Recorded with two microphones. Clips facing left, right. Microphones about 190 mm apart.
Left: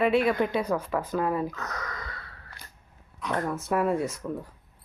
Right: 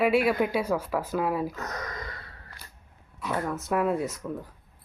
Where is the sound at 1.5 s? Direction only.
20° right (ahead or behind).